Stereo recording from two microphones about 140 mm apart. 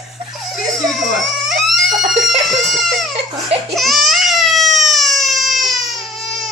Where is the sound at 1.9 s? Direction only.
60° right (ahead or behind).